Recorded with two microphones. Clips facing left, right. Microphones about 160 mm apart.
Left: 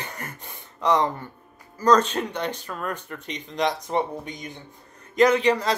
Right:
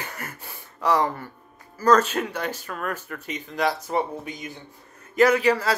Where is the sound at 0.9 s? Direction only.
20° left (ahead or behind).